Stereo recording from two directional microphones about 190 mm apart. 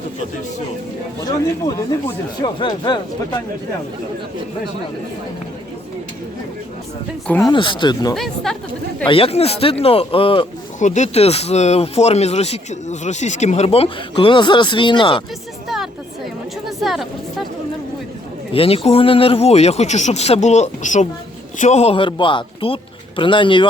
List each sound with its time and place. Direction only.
1.2 s speech: 20° left (ahead or behind)
7.3 s speech: 10° left (ahead or behind)
7.5 s speech: 25° left (ahead or behind)
8.1 s speech: centre (ahead or behind)
9.0 s speech: 30° left (ahead or behind)
10.8 s speech: 40° left (ahead or behind)
16.6 s speech: centre (ahead or behind)
18.5 s speech: 30° left (ahead or behind)